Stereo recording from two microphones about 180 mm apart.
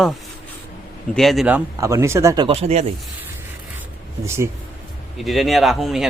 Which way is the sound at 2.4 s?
35° right (ahead or behind).